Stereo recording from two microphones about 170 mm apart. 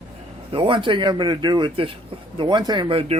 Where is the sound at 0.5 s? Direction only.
30° right (ahead or behind).